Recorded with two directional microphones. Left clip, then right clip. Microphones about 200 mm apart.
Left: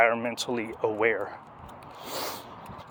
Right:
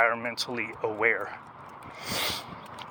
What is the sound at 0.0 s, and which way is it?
Speech, 45° left (ahead or behind).